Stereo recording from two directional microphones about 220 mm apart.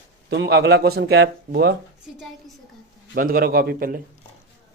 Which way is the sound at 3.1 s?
40° right (ahead or behind).